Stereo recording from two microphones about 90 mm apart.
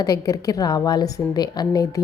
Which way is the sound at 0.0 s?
40° left (ahead or behind).